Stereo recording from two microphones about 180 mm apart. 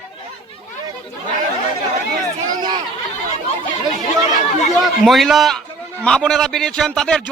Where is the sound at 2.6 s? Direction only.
25° right (ahead or behind).